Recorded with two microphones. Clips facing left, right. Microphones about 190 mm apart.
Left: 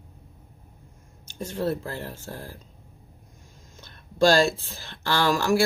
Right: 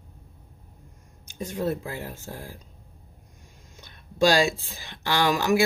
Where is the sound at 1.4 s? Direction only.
15° right (ahead or behind).